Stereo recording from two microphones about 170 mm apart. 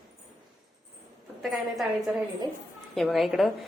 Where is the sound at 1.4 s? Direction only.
Centre (ahead or behind).